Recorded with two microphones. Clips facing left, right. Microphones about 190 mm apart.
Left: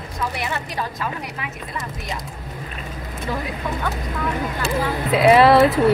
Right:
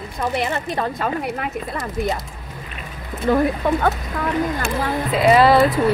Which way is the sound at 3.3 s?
55° right (ahead or behind).